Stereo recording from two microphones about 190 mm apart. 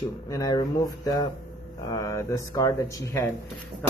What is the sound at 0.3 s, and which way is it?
Speech, 15° left (ahead or behind).